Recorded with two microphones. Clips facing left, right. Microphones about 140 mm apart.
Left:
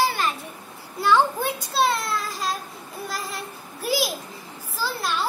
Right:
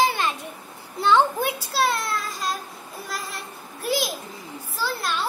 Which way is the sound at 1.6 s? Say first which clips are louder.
Left 4 dB; centre (ahead or behind).